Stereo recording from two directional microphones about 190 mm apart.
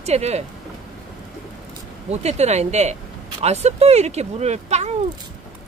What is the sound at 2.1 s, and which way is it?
Speech, 35° right (ahead or behind).